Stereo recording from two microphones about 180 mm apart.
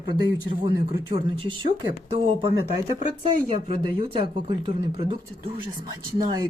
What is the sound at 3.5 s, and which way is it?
Speech, 30° right (ahead or behind).